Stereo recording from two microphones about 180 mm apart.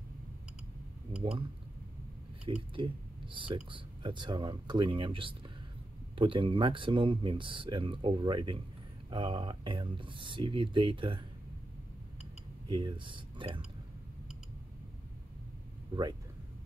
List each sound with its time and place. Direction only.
2.4 s speech: 30° right (ahead or behind)
12.6 s speech: 25° right (ahead or behind)